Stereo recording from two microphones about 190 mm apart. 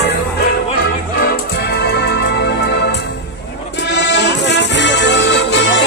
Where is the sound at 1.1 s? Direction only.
55° left (ahead or behind).